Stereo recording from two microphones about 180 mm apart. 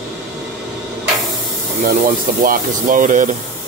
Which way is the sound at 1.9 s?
50° right (ahead or behind).